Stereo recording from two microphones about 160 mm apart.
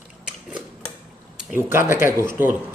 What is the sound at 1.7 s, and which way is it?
Speech, 15° right (ahead or behind).